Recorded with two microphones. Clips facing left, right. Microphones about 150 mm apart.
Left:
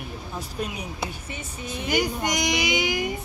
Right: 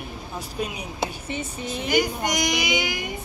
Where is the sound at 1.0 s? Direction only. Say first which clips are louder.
Right 5 dB; 25° right (ahead or behind).